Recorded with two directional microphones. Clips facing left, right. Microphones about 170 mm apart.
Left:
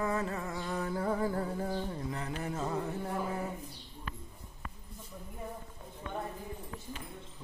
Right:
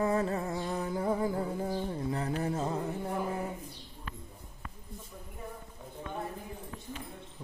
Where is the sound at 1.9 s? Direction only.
30° right (ahead or behind).